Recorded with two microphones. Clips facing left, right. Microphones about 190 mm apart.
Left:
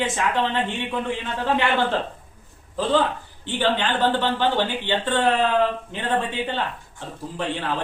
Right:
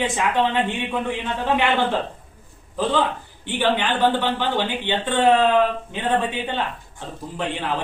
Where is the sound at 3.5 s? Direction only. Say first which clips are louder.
Right 1 dB; 15° right (ahead or behind).